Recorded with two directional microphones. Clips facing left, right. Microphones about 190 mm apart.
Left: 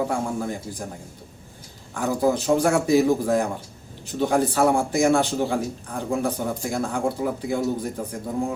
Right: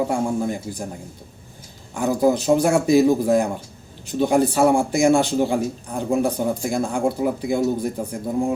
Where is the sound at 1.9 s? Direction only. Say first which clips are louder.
Right 3 dB; 15° right (ahead or behind).